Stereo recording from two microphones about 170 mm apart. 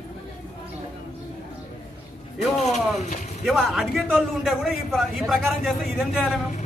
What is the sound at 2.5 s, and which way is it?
Speech, 40° left (ahead or behind).